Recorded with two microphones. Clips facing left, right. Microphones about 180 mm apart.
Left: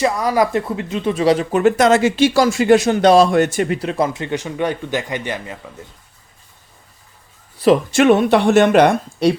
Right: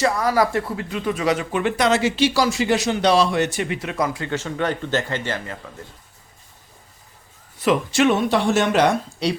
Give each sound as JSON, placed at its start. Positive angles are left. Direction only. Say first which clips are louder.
{"t": 0.0, "sound": "speech", "louder": "left 2 dB", "side_deg": 20}
{"t": 7.6, "sound": "speech", "louder": "left 6 dB", "side_deg": 35}
{"t": 7.9, "sound": "speech", "louder": "left 5 dB", "side_deg": 55}